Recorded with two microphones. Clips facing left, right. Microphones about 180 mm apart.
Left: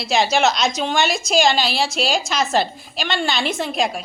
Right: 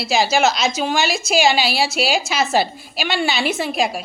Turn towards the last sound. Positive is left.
turn(degrees=-5)  # may be behind; listen again after turning